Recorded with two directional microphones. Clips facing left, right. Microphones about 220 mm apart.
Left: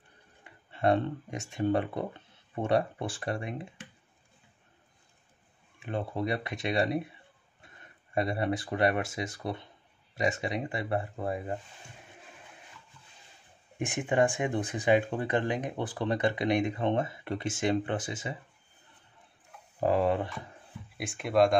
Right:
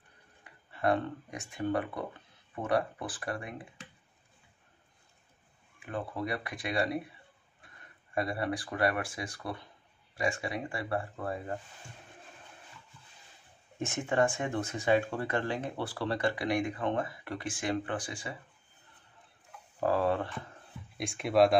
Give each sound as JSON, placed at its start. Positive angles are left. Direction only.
{"t": 0.4, "sound": "speech", "side_deg": 25}
{"t": 5.8, "sound": "speech", "side_deg": 25}
{"t": 13.7, "sound": "speech", "side_deg": 15}
{"t": 19.8, "sound": "speech", "side_deg": 15}
{"t": 21.0, "sound": "speech", "side_deg": 0}